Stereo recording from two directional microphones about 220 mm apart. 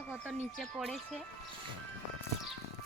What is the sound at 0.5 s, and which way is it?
Speech, centre (ahead or behind).